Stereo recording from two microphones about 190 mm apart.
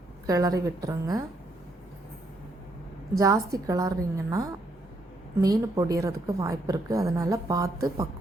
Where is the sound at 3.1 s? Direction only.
15° right (ahead or behind).